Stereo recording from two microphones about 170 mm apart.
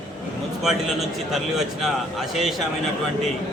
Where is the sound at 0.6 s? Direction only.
Centre (ahead or behind).